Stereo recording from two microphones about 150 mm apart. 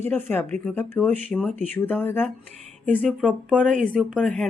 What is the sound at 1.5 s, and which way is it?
Speech, 55° right (ahead or behind).